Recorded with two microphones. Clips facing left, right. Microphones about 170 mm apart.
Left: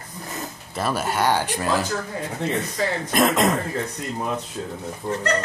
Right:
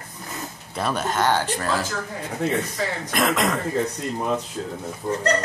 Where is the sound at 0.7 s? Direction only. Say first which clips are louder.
Even; 5° left (ahead or behind).